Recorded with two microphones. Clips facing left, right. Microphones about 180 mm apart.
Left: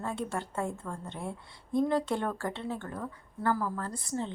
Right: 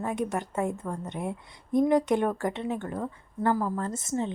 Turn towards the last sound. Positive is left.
turn(degrees=-20)  # may be behind; listen again after turning